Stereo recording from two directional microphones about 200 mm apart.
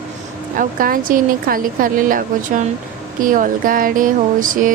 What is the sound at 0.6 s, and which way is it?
A woman's voice, 45° right (ahead or behind).